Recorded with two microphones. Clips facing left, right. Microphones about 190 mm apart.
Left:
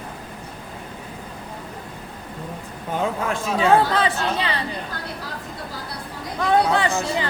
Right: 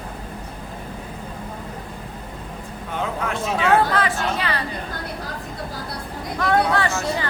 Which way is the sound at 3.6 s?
25° left (ahead or behind).